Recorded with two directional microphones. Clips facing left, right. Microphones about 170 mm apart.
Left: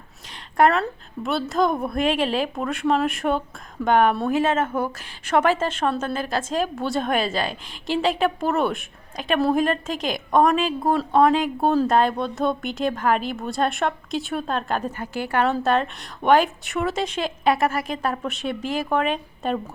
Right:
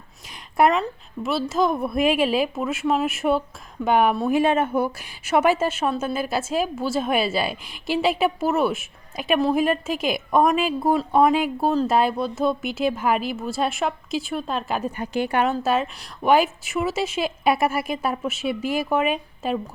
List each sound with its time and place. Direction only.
0.5 s a woman's voice: 5° right (ahead or behind)
14.9 s a woman's voice: 20° right (ahead or behind)
15.6 s a woman's voice: 5° right (ahead or behind)